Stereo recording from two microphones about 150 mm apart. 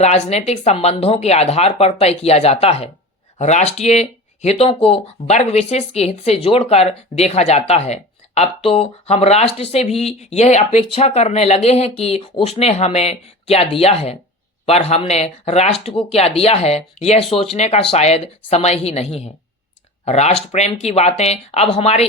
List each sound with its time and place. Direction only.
0.0 s speech: 45° left (ahead or behind)